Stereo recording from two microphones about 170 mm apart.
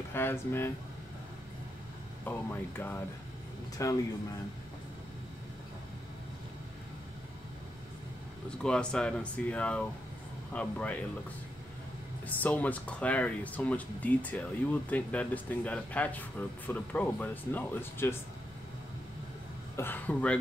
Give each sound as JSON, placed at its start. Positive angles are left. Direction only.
{"t": 0.1, "sound": "speech", "side_deg": 15}
{"t": 2.2, "sound": "speech", "side_deg": 10}
{"t": 8.5, "sound": "speech", "side_deg": 5}
{"t": 12.3, "sound": "speech", "side_deg": 10}
{"t": 19.8, "sound": "speech", "side_deg": 10}